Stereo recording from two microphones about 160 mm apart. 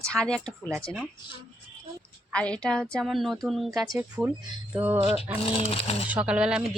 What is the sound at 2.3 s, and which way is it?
A woman's voice, 5° left (ahead or behind).